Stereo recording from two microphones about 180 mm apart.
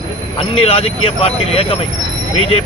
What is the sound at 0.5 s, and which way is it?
Speech, 30° left (ahead or behind).